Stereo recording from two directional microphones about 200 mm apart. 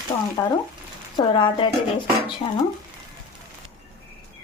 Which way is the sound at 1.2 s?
25° left (ahead or behind).